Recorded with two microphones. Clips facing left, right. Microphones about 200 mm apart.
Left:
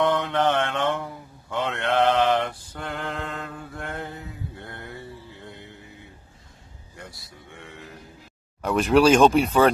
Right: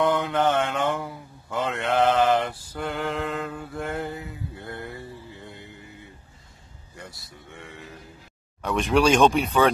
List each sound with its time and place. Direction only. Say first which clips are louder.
0.0 s mantra: even; 5° right (ahead or behind)
7.0 s a sound: even; centre (ahead or behind)
8.6 s speech: left 3 dB; centre (ahead or behind)